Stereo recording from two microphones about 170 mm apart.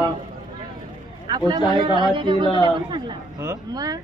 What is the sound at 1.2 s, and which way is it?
A man's voice, 25° right (ahead or behind).